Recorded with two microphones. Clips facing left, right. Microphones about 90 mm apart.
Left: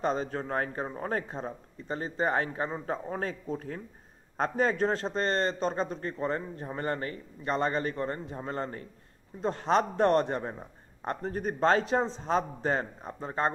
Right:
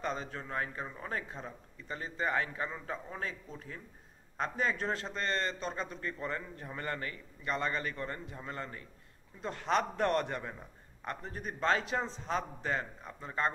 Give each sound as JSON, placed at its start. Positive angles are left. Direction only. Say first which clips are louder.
{"t": 0.0, "sound": "a man's voice", "louder": "left 8 dB", "side_deg": 35}